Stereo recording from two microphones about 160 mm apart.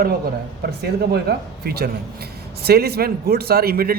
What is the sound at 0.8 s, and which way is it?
A man's voice, 85° right.